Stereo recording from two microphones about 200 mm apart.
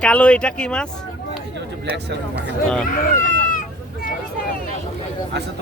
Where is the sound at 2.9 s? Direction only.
45° left (ahead or behind).